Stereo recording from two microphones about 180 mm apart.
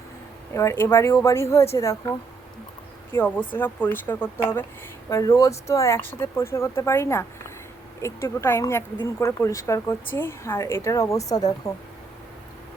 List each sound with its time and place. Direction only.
0.5 s speech: 15° left (ahead or behind)